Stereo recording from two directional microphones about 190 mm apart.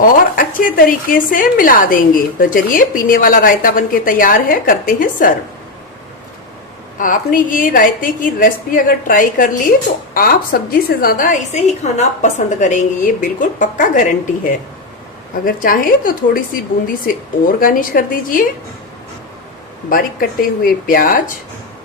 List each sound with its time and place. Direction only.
0.0 s a woman's voice: 45° left (ahead or behind)
7.0 s a woman's voice: 45° left (ahead or behind)
17.6 s a woman's voice: 45° left (ahead or behind)
19.9 s a woman's voice: 50° left (ahead or behind)